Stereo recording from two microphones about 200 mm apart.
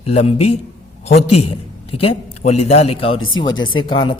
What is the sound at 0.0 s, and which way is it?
A man's voice, 30° left (ahead or behind).